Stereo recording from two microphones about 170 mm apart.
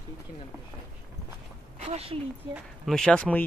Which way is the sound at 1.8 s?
35° right (ahead or behind).